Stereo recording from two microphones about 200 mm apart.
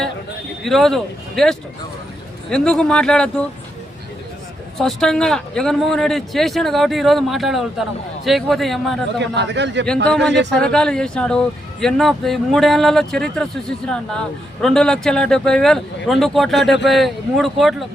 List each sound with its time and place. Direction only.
0.6 s speech: centre (ahead or behind)
4.8 s speech: centre (ahead or behind)
9.2 s a man's voice: 60° right (ahead or behind)
9.8 s speech: 5° left (ahead or behind)